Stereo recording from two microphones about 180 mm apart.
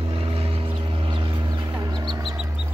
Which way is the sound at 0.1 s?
30° right (ahead or behind).